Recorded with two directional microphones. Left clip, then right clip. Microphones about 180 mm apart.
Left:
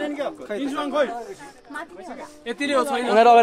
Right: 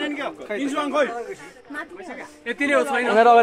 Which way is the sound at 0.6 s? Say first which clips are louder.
Right 1 dB; 30° right (ahead or behind).